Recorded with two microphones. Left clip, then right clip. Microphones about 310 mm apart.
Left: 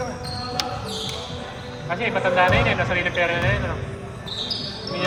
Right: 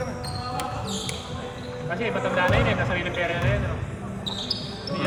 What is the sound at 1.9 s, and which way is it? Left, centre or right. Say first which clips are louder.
Speech: left 5 dB; left.